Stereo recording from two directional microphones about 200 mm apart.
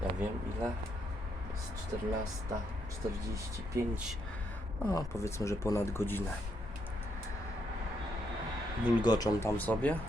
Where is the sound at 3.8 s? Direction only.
15° right (ahead or behind).